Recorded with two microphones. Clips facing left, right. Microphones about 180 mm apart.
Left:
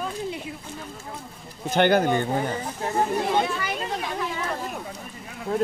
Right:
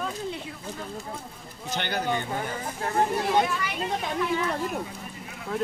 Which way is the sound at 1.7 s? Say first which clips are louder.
Left 9 dB; 50° left (ahead or behind).